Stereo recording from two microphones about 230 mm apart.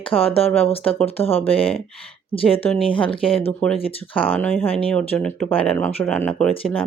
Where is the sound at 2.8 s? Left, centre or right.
Left.